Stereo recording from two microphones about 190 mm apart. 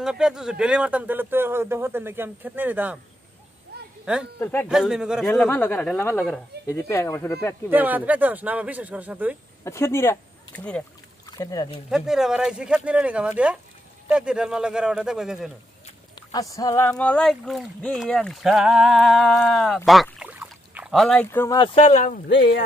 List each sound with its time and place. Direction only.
0.0 s a man's voice: 5° right (ahead or behind)
4.0 s speech: 5° right (ahead or behind)
4.4 s speech: 15° left (ahead or behind)
4.6 s speech: 5° right (ahead or behind)
7.7 s a man's voice: 10° right (ahead or behind)
9.7 s speech: 15° left (ahead or behind)
11.2 s speech: 20° left (ahead or behind)
11.9 s speech: centre (ahead or behind)
16.2 s speech: 20° left (ahead or behind)
16.9 s speech: 5° left (ahead or behind)
21.5 s speech: 30° left (ahead or behind)